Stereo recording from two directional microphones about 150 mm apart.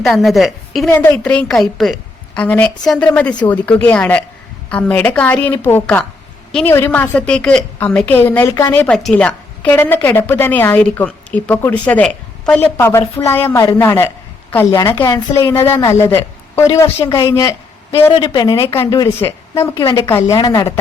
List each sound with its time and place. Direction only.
0.0 s a woman's voice: centre (ahead or behind)
0.9 s a woman's voice: 15° left (ahead or behind)
18.1 s a woman's voice: 35° left (ahead or behind)
20.1 s a woman's voice: 20° left (ahead or behind)